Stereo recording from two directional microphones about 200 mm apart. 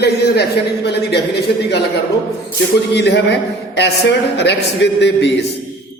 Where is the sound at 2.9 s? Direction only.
60° left (ahead or behind).